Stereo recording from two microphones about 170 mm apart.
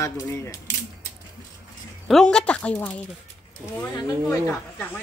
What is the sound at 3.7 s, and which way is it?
Speech, 25° left (ahead or behind).